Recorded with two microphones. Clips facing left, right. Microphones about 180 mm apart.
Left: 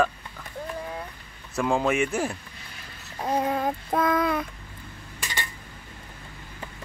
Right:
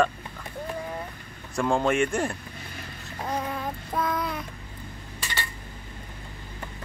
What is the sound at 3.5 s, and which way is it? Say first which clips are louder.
Child singing: left 6 dB; 55° left (ahead or behind).